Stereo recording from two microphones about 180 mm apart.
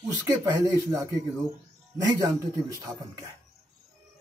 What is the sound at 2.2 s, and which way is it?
Speech, 20° right (ahead or behind).